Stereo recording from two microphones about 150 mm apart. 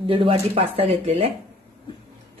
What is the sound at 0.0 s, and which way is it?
Speech, 35° right (ahead or behind).